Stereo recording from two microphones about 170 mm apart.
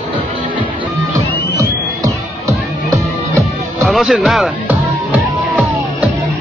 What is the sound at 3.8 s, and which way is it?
Speech, centre (ahead or behind).